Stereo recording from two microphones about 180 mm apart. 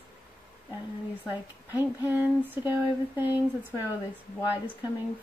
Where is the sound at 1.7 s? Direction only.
10° right (ahead or behind).